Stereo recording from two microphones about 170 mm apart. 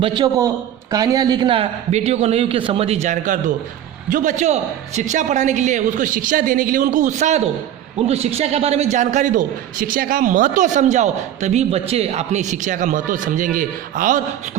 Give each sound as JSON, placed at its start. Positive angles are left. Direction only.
{"t": 0.0, "sound": "a man's voice", "side_deg": -25}